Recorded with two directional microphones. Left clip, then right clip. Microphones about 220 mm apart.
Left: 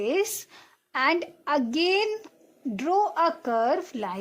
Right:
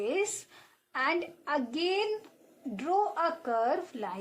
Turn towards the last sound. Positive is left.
turn(degrees=45)  # may be behind; listen again after turning